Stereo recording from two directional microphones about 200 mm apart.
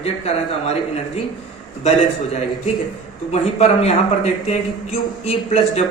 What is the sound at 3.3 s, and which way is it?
Speech, 35° left (ahead or behind).